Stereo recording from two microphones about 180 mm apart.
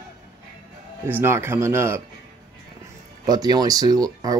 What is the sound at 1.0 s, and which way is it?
Speech, 10° right (ahead or behind).